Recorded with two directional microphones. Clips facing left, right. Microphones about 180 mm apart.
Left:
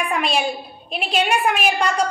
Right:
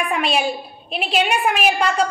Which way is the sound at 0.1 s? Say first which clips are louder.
Right 1 dB; centre (ahead or behind).